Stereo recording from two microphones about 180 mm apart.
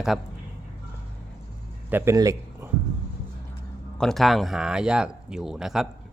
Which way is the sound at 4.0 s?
Centre (ahead or behind).